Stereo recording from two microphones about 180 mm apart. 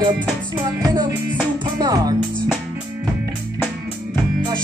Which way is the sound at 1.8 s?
20° right (ahead or behind).